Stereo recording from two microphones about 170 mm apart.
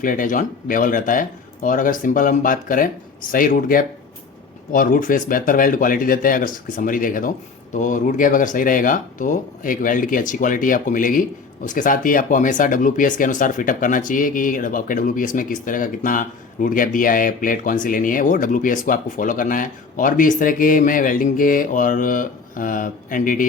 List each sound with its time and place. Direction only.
0.0 s speech: 50° left (ahead or behind)